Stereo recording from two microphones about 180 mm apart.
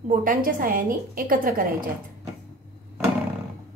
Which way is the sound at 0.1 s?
50° right (ahead or behind).